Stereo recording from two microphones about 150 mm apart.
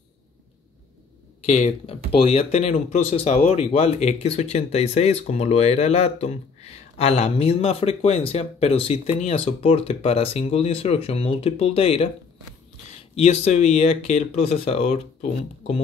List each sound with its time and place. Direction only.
1.4 s speech: 50° left (ahead or behind)
13.1 s speech: 45° left (ahead or behind)